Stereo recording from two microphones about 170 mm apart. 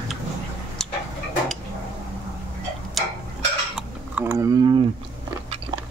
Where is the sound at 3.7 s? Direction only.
10° right (ahead or behind).